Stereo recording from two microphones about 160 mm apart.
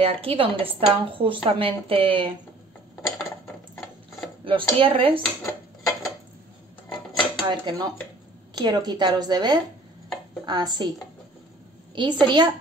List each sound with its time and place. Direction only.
0.0 s a woman's voice: 35° right (ahead or behind)
3.1 s dishes: 15° left (ahead or behind)
4.5 s a woman's voice: 35° right (ahead or behind)
5.4 s dishes: 20° left (ahead or behind)
7.4 s a woman's voice: 30° right (ahead or behind)
11.9 s a woman's voice: 30° right (ahead or behind)